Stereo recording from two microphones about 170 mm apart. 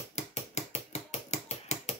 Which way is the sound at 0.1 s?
40° left (ahead or behind).